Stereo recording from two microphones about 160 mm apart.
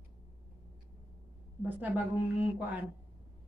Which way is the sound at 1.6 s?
10° right (ahead or behind).